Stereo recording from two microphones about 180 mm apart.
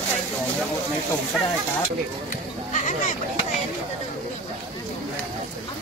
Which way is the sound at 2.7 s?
40° left (ahead or behind).